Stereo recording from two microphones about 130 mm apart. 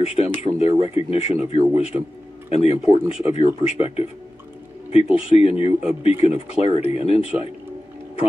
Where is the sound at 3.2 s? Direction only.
45° left (ahead or behind).